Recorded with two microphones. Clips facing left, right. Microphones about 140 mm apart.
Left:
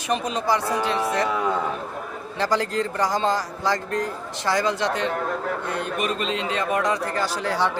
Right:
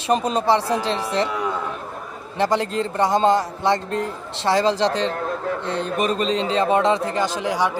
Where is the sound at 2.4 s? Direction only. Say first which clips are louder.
Right 3 dB; 20° right (ahead or behind).